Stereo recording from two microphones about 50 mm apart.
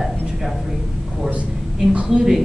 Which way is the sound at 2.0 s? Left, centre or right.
Centre.